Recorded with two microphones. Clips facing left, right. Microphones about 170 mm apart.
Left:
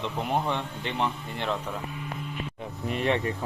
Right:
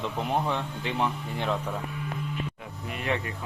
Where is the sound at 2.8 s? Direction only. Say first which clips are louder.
Left 5 dB; 30° left (ahead or behind).